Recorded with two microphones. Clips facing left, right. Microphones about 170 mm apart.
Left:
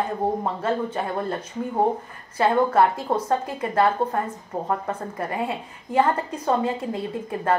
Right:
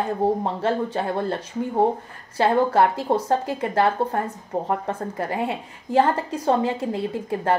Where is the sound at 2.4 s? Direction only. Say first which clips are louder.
Right 1 dB; 30° right (ahead or behind).